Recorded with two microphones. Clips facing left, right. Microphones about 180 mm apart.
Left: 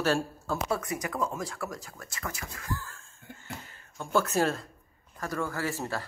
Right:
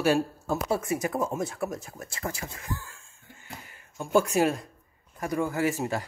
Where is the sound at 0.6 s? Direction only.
25° right (ahead or behind).